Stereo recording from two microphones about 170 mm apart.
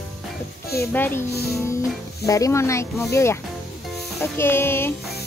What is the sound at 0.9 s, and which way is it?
Speech, 15° left (ahead or behind).